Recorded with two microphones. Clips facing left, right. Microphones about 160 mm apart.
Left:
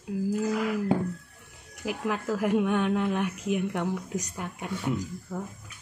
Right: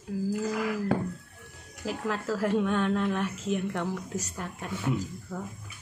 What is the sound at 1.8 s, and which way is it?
A woman's voice, 15° left (ahead or behind).